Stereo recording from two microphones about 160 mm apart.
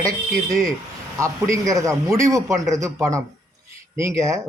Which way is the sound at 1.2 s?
20° right (ahead or behind).